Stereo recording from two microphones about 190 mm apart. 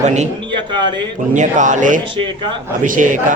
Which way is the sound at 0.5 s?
25° right (ahead or behind).